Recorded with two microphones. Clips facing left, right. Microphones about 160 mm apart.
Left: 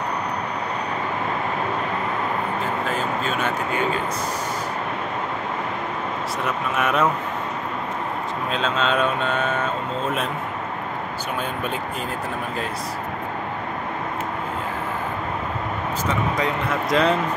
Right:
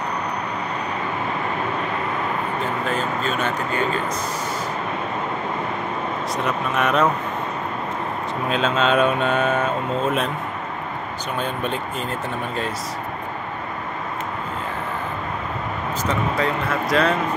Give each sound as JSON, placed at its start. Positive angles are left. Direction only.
{"t": 3.3, "sound": "speech", "side_deg": 10}
{"t": 6.4, "sound": "speech", "side_deg": 5}
{"t": 8.5, "sound": "speech", "side_deg": -5}
{"t": 16.3, "sound": "speech", "side_deg": 20}